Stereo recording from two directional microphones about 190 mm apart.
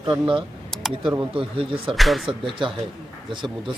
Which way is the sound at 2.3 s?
25° right (ahead or behind).